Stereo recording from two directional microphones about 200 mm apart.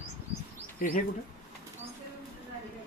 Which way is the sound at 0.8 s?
45° left (ahead or behind).